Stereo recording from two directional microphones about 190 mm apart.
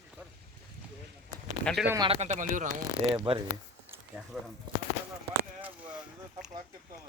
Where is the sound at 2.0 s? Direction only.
35° right (ahead or behind).